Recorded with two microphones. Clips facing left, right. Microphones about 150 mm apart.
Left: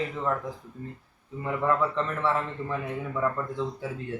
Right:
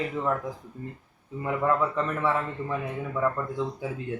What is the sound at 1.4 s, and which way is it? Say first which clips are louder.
A man's voice: right 1 dB; 10° right (ahead or behind).